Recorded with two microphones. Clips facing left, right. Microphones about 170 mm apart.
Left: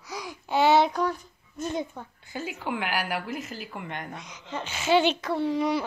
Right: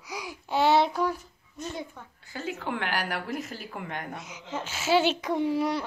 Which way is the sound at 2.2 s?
15° left (ahead or behind).